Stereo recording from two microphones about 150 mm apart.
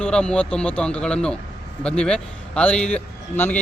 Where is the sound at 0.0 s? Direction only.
5° left (ahead or behind).